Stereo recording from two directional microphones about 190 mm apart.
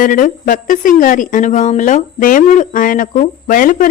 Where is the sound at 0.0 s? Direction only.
45° left (ahead or behind).